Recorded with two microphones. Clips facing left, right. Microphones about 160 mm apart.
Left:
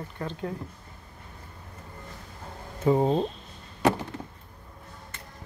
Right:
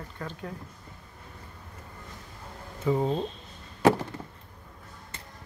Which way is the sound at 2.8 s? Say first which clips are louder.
Left 4 dB; 40° left (ahead or behind).